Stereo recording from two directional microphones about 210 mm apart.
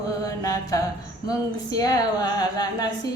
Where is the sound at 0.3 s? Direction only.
15° left (ahead or behind).